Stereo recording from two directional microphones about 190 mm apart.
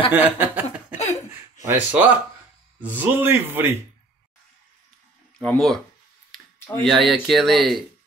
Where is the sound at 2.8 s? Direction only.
10° right (ahead or behind).